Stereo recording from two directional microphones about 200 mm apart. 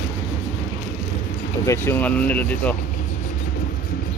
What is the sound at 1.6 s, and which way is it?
Speech, 10° left (ahead or behind).